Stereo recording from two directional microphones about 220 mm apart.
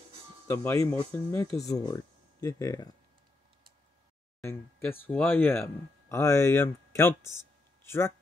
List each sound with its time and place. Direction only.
0.5 s speech: 10° left (ahead or behind)
4.4 s speech: 10° left (ahead or behind)